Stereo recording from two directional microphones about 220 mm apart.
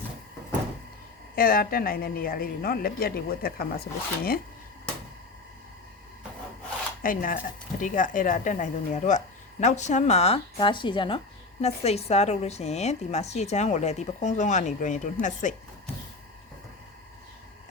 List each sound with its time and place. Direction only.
1.4 s a woman's voice: 40° left (ahead or behind)
7.0 s a woman's voice: 40° left (ahead or behind)